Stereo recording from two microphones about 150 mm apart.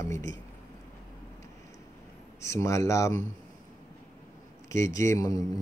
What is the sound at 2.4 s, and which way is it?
Speech, 20° left (ahead or behind).